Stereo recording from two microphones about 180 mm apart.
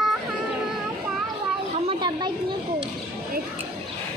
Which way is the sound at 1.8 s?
30° right (ahead or behind).